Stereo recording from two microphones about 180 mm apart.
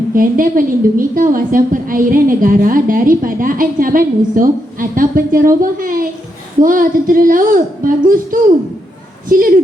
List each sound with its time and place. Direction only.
0.1 s a woman's voice: 50° right (ahead or behind)